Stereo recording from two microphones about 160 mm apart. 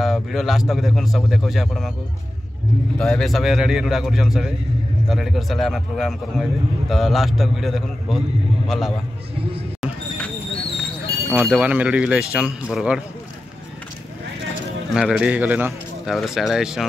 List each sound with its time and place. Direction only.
0.0 s a man's voice: centre (ahead or behind)
3.0 s a man's voice: centre (ahead or behind)
9.8 s a sound: 5° left (ahead or behind)
11.3 s a man's voice: 10° right (ahead or behind)
15.0 s a man's voice: 5° right (ahead or behind)